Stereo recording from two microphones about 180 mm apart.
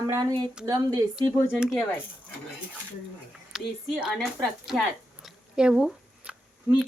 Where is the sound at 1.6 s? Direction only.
5° right (ahead or behind).